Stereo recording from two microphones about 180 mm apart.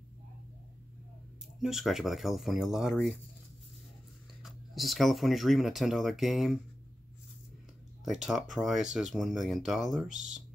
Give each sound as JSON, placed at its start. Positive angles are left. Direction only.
{"t": 1.6, "sound": "speech", "side_deg": 0}
{"t": 4.4, "sound": "speech", "side_deg": 0}
{"t": 8.0, "sound": "speech", "side_deg": 0}